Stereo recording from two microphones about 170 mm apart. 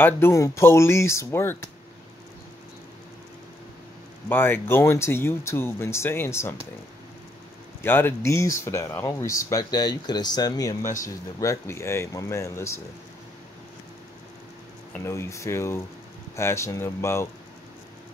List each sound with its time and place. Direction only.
0.0 s speech: 15° left (ahead or behind)
4.3 s speech: 15° left (ahead or behind)
7.8 s speech: 15° left (ahead or behind)
15.0 s speech: 15° left (ahead or behind)